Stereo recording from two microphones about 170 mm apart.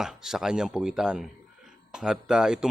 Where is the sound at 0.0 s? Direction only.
Centre (ahead or behind).